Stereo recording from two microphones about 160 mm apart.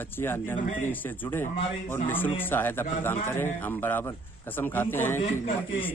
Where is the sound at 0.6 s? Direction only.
55° left (ahead or behind).